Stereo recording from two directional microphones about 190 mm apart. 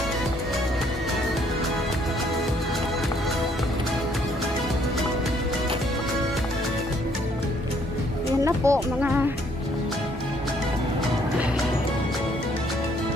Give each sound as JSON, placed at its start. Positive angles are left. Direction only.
{"t": 8.5, "sound": "speech", "side_deg": -10}